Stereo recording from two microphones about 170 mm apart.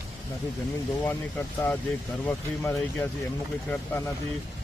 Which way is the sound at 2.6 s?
15° left (ahead or behind).